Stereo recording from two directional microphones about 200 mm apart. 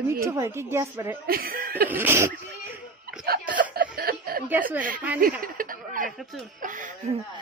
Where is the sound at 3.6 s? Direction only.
45° right (ahead or behind).